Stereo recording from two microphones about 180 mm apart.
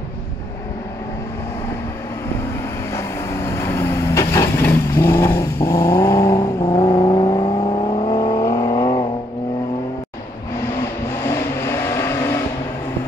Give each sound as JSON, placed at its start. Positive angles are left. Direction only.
{"t": 2.9, "sound": "vehicle", "side_deg": 15}
{"t": 8.2, "sound": "vehicle", "side_deg": 20}
{"t": 11.2, "sound": "vehicle", "side_deg": 15}